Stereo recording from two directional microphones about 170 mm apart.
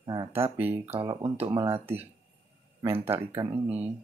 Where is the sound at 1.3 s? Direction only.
35° right (ahead or behind).